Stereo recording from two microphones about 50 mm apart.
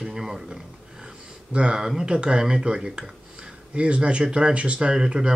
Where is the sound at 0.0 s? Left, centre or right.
Centre.